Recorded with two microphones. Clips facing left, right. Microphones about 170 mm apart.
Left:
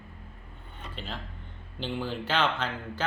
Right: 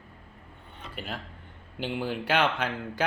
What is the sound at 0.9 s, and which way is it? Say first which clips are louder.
Speech: right 2 dB; 10° right (ahead or behind).